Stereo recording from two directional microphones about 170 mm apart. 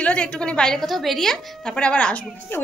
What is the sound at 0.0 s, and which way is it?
A woman's voice, 5° left (ahead or behind).